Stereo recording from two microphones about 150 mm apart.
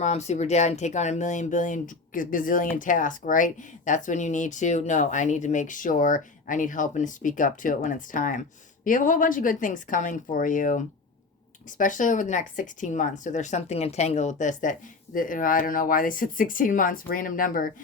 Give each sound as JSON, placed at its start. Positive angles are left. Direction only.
{"t": 0.0, "sound": "speech", "side_deg": 50}